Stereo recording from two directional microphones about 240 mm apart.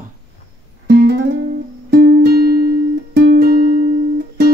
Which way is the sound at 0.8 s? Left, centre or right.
Right.